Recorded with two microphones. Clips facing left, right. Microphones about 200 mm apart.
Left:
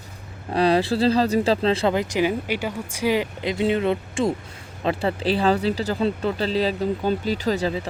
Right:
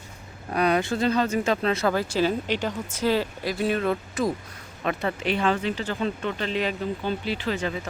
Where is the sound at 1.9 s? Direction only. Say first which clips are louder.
Left 2 dB; 15° left (ahead or behind).